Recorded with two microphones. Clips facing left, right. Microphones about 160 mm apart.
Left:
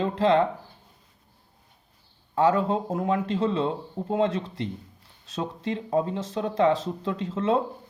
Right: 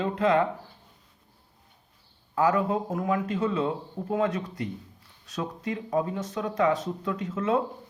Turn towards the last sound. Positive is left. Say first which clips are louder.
# left 2 dB
turn(degrees=30)  # may be behind; listen again after turning